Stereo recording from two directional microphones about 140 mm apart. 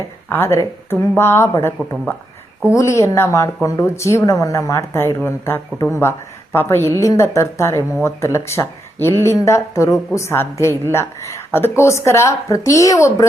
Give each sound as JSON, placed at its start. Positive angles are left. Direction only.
{"t": 0.3, "sound": "a woman's voice", "side_deg": 15}